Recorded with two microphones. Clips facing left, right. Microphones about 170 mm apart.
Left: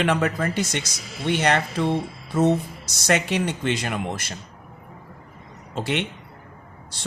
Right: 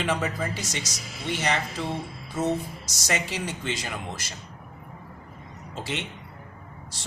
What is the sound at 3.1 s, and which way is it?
Speech, 65° left (ahead or behind).